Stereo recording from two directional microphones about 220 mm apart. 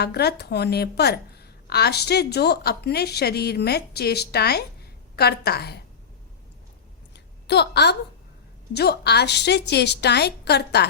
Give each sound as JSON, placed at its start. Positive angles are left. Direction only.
{"t": 0.0, "sound": "a woman's voice", "side_deg": 50}
{"t": 7.1, "sound": "a sound", "side_deg": 50}
{"t": 8.7, "sound": "a woman's voice", "side_deg": 45}